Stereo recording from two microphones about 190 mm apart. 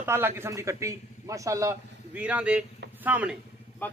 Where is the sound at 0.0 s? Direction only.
10° right (ahead or behind).